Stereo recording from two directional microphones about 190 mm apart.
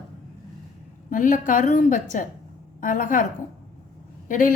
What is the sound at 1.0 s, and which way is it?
A woman's voice, 45° left (ahead or behind).